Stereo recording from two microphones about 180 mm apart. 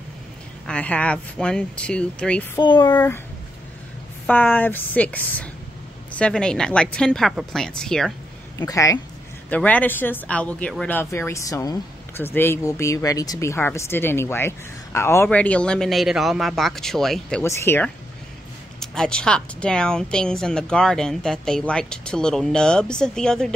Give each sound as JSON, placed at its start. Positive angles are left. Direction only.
{"t": 0.7, "sound": "speech", "side_deg": 10}
{"t": 2.6, "sound": "speech", "side_deg": 25}
{"t": 4.3, "sound": "speech", "side_deg": 10}
{"t": 8.5, "sound": "speech", "side_deg": 20}
{"t": 9.5, "sound": "speech", "side_deg": 10}
{"t": 17.4, "sound": "speech", "side_deg": 10}